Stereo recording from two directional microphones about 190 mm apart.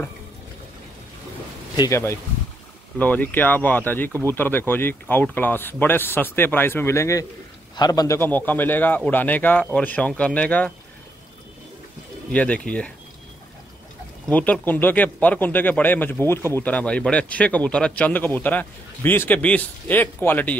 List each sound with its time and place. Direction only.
1.8 s speech: 15° left (ahead or behind)
12.3 s speech: 5° left (ahead or behind)
14.3 s speech: 10° left (ahead or behind)